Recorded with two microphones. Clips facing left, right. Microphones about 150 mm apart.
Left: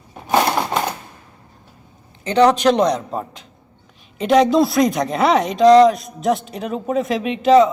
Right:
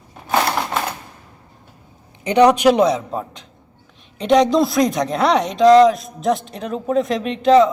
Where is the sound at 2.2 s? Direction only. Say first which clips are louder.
Right 1 dB; 15° right (ahead or behind).